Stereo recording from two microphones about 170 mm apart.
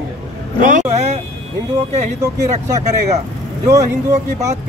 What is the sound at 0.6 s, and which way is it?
Speech, 45° right (ahead or behind).